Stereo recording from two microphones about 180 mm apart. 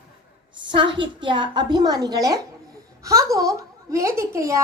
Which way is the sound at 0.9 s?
25° right (ahead or behind).